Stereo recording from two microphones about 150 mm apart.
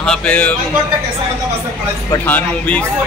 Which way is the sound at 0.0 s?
5° left (ahead or behind).